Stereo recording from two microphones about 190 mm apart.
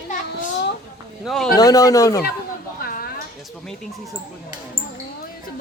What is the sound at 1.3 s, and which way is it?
Speech, centre (ahead or behind).